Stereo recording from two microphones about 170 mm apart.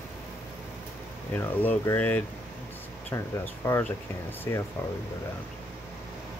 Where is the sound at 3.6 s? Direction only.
15° left (ahead or behind).